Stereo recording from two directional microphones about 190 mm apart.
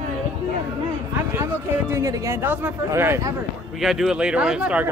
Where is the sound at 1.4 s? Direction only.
15° right (ahead or behind).